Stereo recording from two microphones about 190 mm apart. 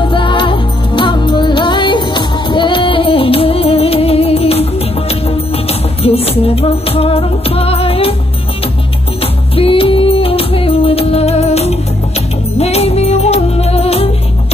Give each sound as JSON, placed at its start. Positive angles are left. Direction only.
{"t": 0.0, "sound": "music", "side_deg": 25}
{"t": 6.0, "sound": "music", "side_deg": 30}
{"t": 9.6, "sound": "music", "side_deg": 30}